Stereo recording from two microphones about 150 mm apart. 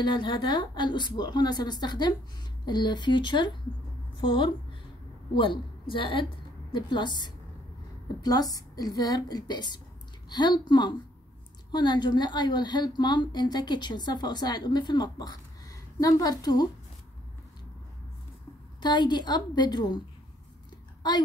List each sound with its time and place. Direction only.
0.0 s a woman's voice: 30° left (ahead or behind)
18.8 s a woman's voice: 30° left (ahead or behind)
21.0 s a woman's voice: 30° left (ahead or behind)